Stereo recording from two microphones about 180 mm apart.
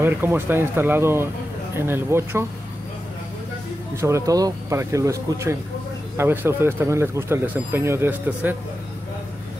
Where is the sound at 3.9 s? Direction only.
15° right (ahead or behind).